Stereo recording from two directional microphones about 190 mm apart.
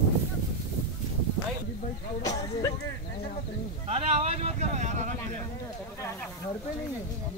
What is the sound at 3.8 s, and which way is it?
Vehicle, 35° right (ahead or behind).